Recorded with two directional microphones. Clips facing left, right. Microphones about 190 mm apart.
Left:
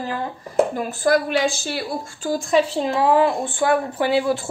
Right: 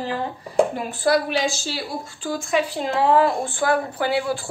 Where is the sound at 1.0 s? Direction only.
55° left (ahead or behind).